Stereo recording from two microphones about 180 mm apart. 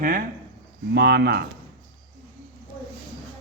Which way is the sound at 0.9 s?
65° right (ahead or behind).